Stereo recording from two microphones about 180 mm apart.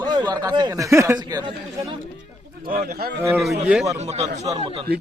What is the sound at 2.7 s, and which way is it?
Speech, 55° right (ahead or behind).